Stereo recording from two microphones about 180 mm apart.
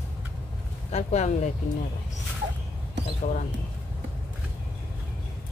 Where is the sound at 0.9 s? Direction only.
40° left (ahead or behind).